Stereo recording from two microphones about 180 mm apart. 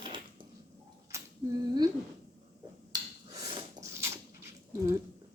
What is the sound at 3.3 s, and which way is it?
Dog, 20° right (ahead or behind).